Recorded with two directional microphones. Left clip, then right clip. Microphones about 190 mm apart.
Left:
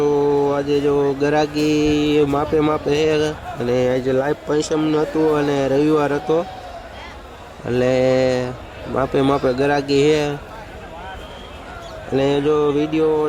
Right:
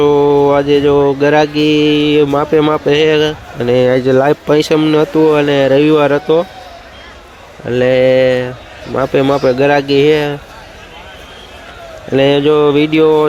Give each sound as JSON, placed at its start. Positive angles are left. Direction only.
{"t": 0.0, "sound": "a sound", "side_deg": -15}
{"t": 0.4, "sound": "speech", "side_deg": -15}
{"t": 4.8, "sound": "speech", "side_deg": -15}
{"t": 7.7, "sound": "speech", "side_deg": -5}
{"t": 12.1, "sound": "speech", "side_deg": -15}